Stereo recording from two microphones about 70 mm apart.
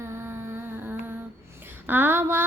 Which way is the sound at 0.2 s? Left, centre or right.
Right.